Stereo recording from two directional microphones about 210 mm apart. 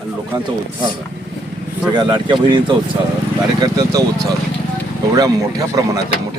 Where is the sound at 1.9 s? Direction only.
20° right (ahead or behind).